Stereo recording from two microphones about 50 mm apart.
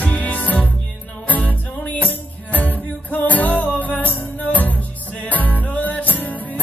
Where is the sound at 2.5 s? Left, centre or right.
Left.